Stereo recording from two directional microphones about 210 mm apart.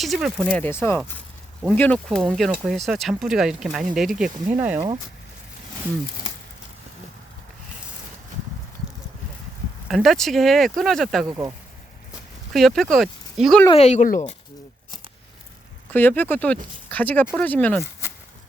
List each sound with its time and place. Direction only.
0.0 s speech: centre (ahead or behind)
9.9 s speech: centre (ahead or behind)
11.3 s speech: 15° right (ahead or behind)
12.5 s speech: centre (ahead or behind)
13.7 s speech: 30° left (ahead or behind)
15.9 s speech: 10° left (ahead or behind)